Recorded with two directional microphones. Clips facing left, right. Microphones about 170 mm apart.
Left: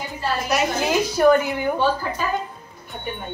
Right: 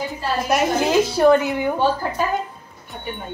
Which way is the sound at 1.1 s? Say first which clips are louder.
Left 1 dB; 25° right (ahead or behind).